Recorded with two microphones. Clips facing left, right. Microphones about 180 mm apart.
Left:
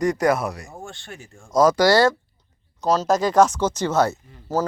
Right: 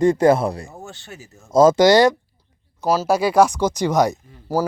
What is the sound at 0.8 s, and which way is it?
Speech, 5° right (ahead or behind).